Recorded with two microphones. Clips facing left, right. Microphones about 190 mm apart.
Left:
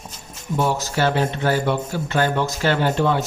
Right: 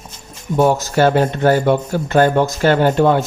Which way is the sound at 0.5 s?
45° right (ahead or behind).